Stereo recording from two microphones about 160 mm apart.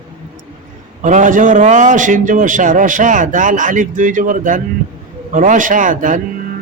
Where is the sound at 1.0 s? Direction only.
50° right (ahead or behind).